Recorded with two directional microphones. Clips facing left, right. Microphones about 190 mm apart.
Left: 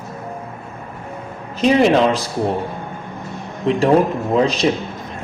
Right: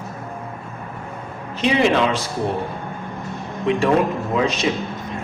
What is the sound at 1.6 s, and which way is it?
Speech, 40° left (ahead or behind).